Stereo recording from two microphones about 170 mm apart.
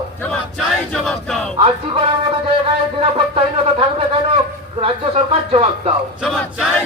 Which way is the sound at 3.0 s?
35° right (ahead or behind).